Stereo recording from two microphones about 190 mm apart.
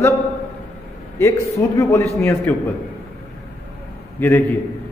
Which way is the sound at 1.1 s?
15° left (ahead or behind).